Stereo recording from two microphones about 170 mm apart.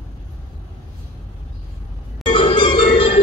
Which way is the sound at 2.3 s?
30° left (ahead or behind).